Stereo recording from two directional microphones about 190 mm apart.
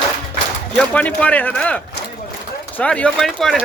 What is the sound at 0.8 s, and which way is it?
A man's voice, 5° left (ahead or behind).